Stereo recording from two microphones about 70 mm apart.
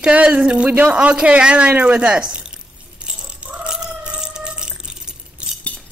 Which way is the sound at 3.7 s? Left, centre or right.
Centre.